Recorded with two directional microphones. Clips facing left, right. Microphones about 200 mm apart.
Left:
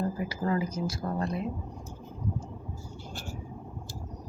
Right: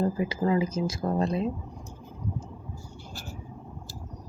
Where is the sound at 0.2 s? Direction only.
20° right (ahead or behind).